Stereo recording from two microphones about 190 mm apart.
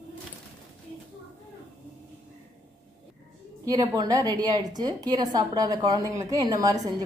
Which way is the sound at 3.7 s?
20° right (ahead or behind).